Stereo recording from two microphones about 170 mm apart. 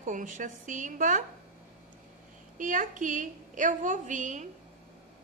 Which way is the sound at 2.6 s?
50° right (ahead or behind).